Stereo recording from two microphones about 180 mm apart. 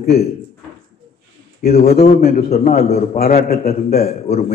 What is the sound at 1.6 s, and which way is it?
A man's voice, 55° left (ahead or behind).